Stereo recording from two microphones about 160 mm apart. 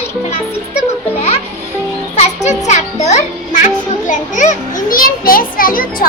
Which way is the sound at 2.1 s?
45° left (ahead or behind).